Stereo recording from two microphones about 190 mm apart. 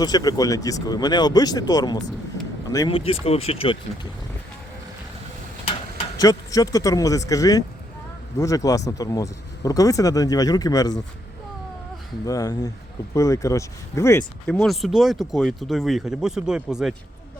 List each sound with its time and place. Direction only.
0.0 s speech: 20° left (ahead or behind)
2.9 s speech: 30° left (ahead or behind)
6.1 s speech: 20° left (ahead or behind)
12.2 s speech: 20° left (ahead or behind)
14.4 s speech: centre (ahead or behind)